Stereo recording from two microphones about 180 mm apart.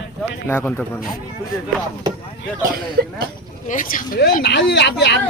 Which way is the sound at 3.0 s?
60° right (ahead or behind).